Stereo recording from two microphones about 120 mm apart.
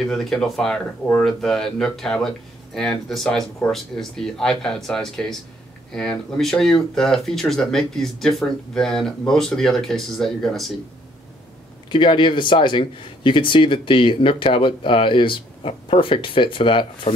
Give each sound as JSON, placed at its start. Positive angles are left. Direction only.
{"t": 0.0, "sound": "speech", "side_deg": 5}
{"t": 11.9, "sound": "speech", "side_deg": 45}